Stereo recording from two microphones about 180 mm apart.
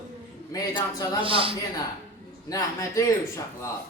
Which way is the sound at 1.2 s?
30° right (ahead or behind).